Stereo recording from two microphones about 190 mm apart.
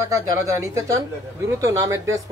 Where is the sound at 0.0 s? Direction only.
15° right (ahead or behind).